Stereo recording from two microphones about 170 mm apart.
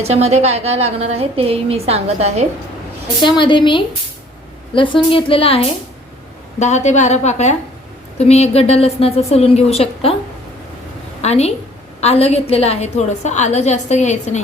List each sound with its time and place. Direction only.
0.0 s a woman's voice: 40° right (ahead or behind)
3.2 s a woman's voice: 25° left (ahead or behind)
6.6 s a woman's voice: 40° left (ahead or behind)
11.2 s a sound: 40° left (ahead or behind)
11.9 s a woman's voice: 35° left (ahead or behind)